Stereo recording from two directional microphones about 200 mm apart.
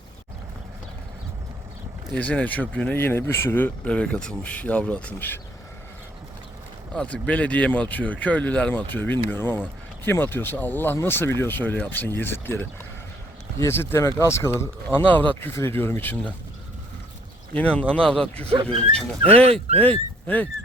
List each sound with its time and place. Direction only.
2.1 s speech: 5° left (ahead or behind)
6.9 s speech: 5° left (ahead or behind)
17.5 s speech: 5° left (ahead or behind)
18.5 s speech: 30° right (ahead or behind)
19.8 s speech: 10° left (ahead or behind)